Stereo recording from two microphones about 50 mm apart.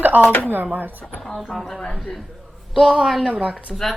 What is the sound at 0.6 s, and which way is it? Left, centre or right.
Speech, right.